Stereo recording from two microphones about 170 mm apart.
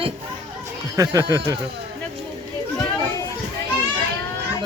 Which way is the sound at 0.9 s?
20° right (ahead or behind).